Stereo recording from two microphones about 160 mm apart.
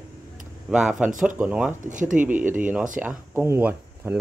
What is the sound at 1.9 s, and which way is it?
Speech, 55° right (ahead or behind).